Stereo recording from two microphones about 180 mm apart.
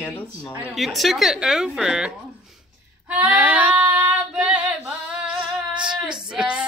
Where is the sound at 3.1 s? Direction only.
5° right (ahead or behind).